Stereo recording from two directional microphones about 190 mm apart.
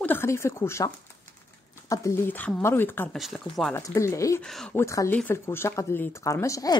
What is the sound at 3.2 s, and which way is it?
Speech, centre (ahead or behind).